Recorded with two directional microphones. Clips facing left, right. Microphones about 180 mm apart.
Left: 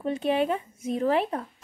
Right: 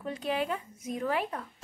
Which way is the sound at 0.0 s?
25° left (ahead or behind).